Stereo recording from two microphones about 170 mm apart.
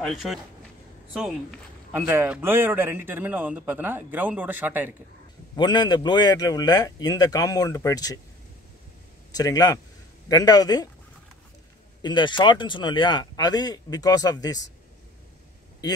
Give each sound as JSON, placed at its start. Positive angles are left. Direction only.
{"t": 0.0, "sound": "speech", "side_deg": 0}
{"t": 1.9, "sound": "a man's voice", "side_deg": -10}
{"t": 5.6, "sound": "speech", "side_deg": 25}
{"t": 9.3, "sound": "speech", "side_deg": 20}
{"t": 12.0, "sound": "speech", "side_deg": 25}